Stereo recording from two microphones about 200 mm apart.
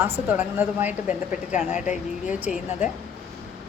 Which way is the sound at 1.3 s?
35° left (ahead or behind).